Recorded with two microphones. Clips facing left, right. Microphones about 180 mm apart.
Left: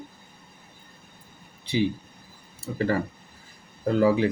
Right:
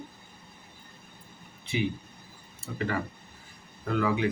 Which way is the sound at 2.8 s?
40° left (ahead or behind).